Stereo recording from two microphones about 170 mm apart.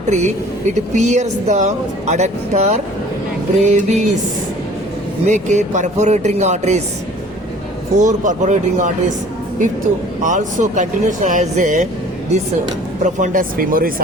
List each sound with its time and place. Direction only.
0.1 s speech: 45° right (ahead or behind)
5.2 s speech: 45° right (ahead or behind)
7.9 s speech: 45° right (ahead or behind)
10.2 s speech: 45° right (ahead or behind)
13.0 s speech: 45° right (ahead or behind)